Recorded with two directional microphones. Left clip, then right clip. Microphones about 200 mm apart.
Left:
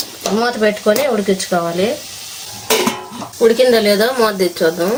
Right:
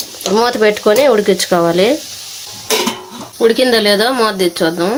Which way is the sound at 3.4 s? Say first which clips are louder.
Even; 50° right (ahead or behind).